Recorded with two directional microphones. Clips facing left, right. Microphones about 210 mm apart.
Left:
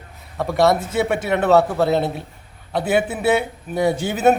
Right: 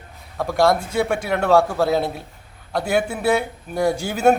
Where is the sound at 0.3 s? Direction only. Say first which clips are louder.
Left 1 dB; centre (ahead or behind).